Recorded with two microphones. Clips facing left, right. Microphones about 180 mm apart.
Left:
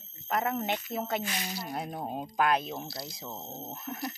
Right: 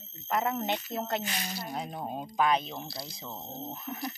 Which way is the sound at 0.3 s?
Centre (ahead or behind).